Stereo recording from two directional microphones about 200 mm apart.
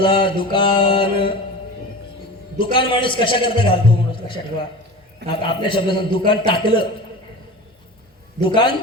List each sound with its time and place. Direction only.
0.0 s a man's voice: 25° left (ahead or behind)
2.6 s a man's voice: 25° left (ahead or behind)
8.4 s a man's voice: 25° left (ahead or behind)